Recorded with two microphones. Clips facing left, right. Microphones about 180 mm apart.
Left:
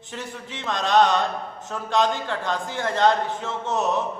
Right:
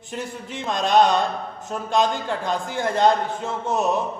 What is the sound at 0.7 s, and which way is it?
A man's voice, 10° right (ahead or behind).